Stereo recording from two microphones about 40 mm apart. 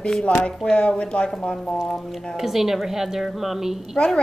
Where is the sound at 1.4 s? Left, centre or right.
Centre.